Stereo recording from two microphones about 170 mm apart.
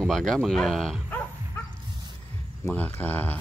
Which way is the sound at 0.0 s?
Centre (ahead or behind).